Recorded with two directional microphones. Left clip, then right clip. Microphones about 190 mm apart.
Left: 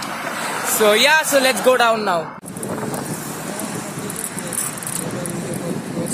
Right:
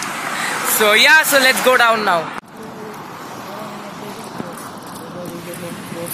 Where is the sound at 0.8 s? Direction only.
Centre (ahead or behind).